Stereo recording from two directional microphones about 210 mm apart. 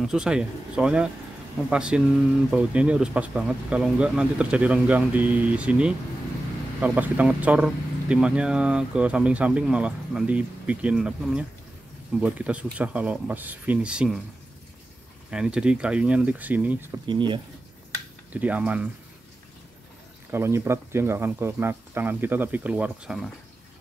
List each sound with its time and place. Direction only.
0.0 s speech: 5° right (ahead or behind)
15.3 s speech: 5° right (ahead or behind)
17.0 s speech: 20° right (ahead or behind)
18.3 s speech: 5° right (ahead or behind)
20.2 s speech: 10° right (ahead or behind)